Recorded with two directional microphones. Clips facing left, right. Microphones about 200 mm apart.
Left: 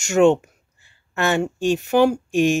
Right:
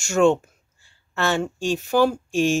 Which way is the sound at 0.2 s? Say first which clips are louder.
Left 3 dB; 20° left (ahead or behind).